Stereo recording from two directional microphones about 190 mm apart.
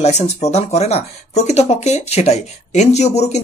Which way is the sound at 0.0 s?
35° left (ahead or behind).